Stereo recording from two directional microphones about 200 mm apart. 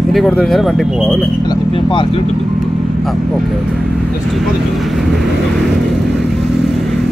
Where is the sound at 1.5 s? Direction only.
25° left (ahead or behind).